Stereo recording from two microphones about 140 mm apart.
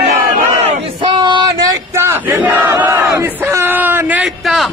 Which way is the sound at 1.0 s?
35° right (ahead or behind).